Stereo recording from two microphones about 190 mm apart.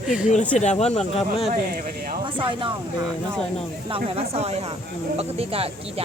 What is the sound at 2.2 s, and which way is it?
Speech, 25° right (ahead or behind).